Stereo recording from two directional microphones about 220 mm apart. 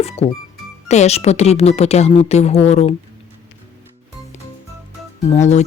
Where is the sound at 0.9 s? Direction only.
30° left (ahead or behind).